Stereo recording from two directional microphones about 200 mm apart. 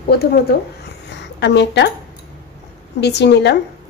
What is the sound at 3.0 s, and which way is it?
Speech, 55° left (ahead or behind).